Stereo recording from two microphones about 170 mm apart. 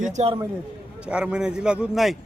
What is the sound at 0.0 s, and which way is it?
Speech, 40° right (ahead or behind).